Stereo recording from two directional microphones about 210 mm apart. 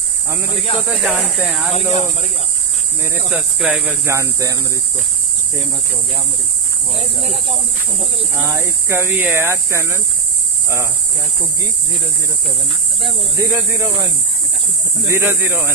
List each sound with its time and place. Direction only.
0.7 s speech: centre (ahead or behind)
1.7 s speech: 35° left (ahead or behind)
3.3 s speech: 5° right (ahead or behind)
7.0 s speech: 30° right (ahead or behind)
8.4 s speech: 15° right (ahead or behind)
13.0 s speech: 15° right (ahead or behind)
15.0 s speech: 10° right (ahead or behind)